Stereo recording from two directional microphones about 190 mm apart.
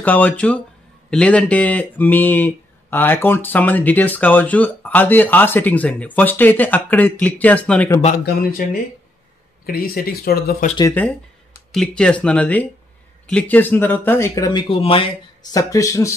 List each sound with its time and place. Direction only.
0.0 s speech: 10° left (ahead or behind)
8.0 s speech: 45° left (ahead or behind)
11.0 s speech: 10° left (ahead or behind); by 15.6 s 30° left (ahead or behind)
15.7 s speech: 15° left (ahead or behind)